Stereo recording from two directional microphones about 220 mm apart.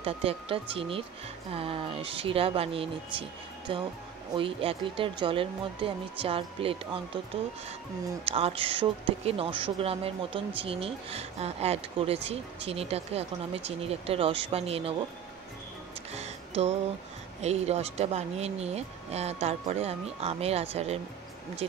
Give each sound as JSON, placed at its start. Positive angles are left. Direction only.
{"t": 0.0, "sound": "speech", "side_deg": -25}
{"t": 8.3, "sound": "speech", "side_deg": -25}
{"t": 16.1, "sound": "music", "side_deg": -30}
{"t": 17.4, "sound": "speech", "side_deg": -30}